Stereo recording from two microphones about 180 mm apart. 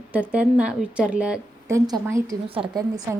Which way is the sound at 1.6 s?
20° right (ahead or behind).